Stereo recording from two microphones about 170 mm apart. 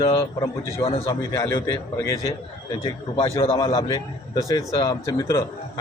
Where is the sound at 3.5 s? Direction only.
20° left (ahead or behind).